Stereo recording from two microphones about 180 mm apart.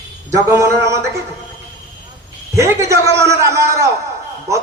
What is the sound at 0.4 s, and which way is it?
Speech, 15° right (ahead or behind).